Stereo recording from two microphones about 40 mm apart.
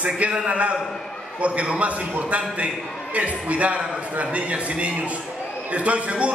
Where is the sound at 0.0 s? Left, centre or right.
Right.